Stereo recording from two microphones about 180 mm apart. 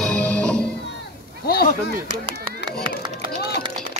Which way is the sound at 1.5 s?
55° left (ahead or behind).